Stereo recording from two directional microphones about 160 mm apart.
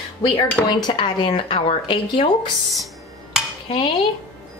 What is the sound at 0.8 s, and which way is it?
Speech, 30° left (ahead or behind).